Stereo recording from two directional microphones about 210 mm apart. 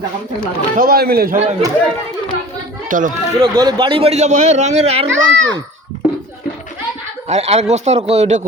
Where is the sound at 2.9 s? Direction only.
40° right (ahead or behind).